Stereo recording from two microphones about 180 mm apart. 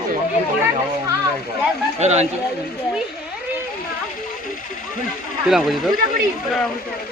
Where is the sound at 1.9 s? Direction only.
35° right (ahead or behind).